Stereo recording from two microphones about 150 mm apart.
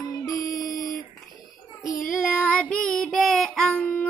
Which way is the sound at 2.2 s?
10° left (ahead or behind).